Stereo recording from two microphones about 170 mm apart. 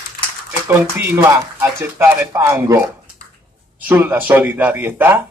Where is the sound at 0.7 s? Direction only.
15° right (ahead or behind).